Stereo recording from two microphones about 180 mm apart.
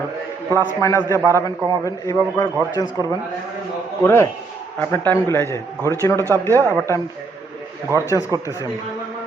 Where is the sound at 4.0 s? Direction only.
15° left (ahead or behind).